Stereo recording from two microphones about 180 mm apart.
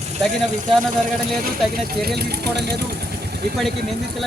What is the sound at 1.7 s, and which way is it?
Speech, 60° right (ahead or behind).